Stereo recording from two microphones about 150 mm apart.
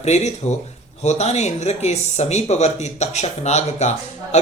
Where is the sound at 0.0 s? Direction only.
50° left (ahead or behind).